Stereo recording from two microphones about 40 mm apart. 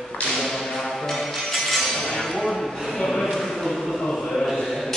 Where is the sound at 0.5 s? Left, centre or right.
Centre.